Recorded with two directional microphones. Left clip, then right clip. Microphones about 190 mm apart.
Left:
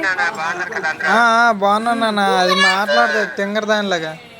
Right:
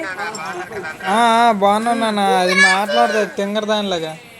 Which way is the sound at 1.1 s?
10° right (ahead or behind).